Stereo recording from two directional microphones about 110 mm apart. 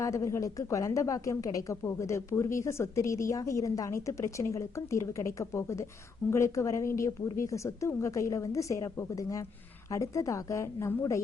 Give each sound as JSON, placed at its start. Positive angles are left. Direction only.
{"t": 0.0, "sound": "a woman's voice", "side_deg": 30}